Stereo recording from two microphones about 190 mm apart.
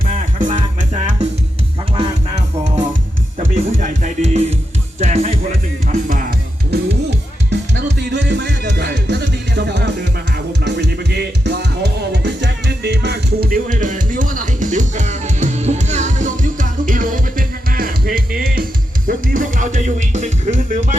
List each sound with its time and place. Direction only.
0.0 s music: 45° right (ahead or behind)
2.0 s music: 35° right (ahead or behind)
7.5 s music: 65° right (ahead or behind); by 20.8 s 40° right (ahead or behind)